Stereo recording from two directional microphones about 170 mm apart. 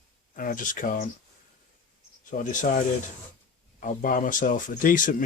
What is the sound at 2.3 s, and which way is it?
Speech, 50° left (ahead or behind).